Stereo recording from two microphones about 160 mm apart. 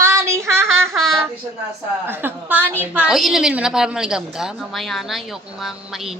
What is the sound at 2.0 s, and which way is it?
A woman's voice, 10° right (ahead or behind).